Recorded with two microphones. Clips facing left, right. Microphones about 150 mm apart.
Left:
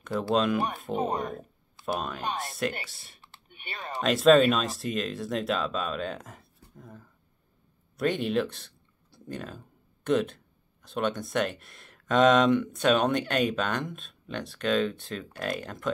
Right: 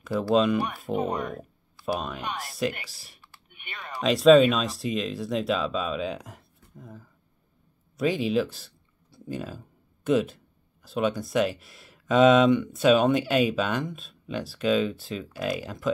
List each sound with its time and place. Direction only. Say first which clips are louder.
0.3 s speech: right 3 dB; centre (ahead or behind)
0.9 s speech: right 2 dB; 35° left (ahead or behind)
1.9 s speech: right 1 dB; centre (ahead or behind)
3.2 s typing: left 1 dB; 30° left (ahead or behind)
4.0 s speech: right 3 dB; centre (ahead or behind)